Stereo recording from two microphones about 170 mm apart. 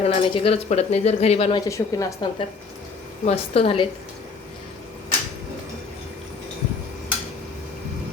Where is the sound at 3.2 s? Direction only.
35° left (ahead or behind).